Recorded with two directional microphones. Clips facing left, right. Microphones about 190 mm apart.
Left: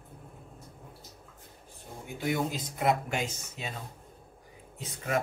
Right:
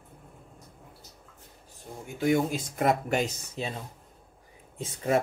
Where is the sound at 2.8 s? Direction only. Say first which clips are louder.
Right 3 dB; 40° right (ahead or behind).